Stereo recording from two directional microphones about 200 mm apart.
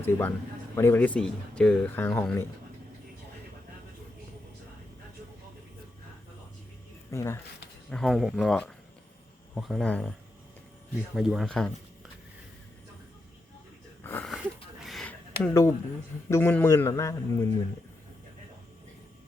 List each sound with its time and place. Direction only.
0.0 s speech: 10° left (ahead or behind)
7.1 s speech: 15° left (ahead or behind)
7.9 s speech: centre (ahead or behind)
14.0 s wheeze: 10° left (ahead or behind)
14.3 s a sound: centre (ahead or behind)
16.3 s speech: 10° left (ahead or behind)